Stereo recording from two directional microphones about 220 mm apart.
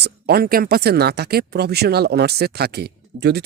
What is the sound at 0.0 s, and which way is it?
Speech, 45° right (ahead or behind).